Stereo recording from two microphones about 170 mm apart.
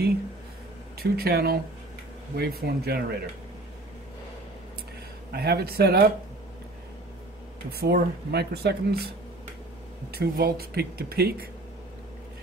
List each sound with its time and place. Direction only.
1.1 s speech: 65° right (ahead or behind)
5.3 s speech: 70° right (ahead or behind)
7.7 s speech: 75° right (ahead or behind)
10.1 s speech: 65° right (ahead or behind)